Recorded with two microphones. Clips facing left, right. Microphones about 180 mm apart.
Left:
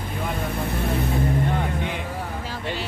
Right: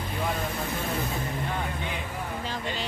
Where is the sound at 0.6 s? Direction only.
60° left (ahead or behind).